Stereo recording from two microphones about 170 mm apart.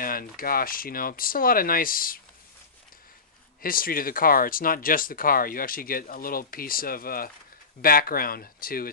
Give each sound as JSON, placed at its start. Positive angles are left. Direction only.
{"t": 0.0, "sound": "speech", "side_deg": 55}
{"t": 3.6, "sound": "speech", "side_deg": 60}